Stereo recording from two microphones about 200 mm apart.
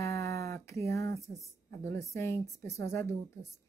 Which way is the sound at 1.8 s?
15° left (ahead or behind).